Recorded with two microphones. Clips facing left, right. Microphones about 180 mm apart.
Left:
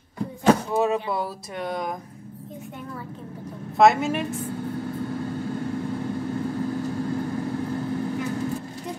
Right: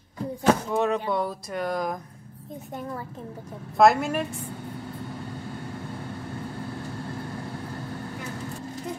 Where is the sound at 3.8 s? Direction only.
Centre (ahead or behind).